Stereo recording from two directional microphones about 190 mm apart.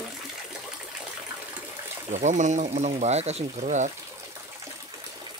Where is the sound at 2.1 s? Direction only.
40° right (ahead or behind).